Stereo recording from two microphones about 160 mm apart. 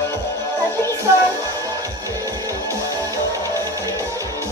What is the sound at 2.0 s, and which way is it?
Music, 20° right (ahead or behind).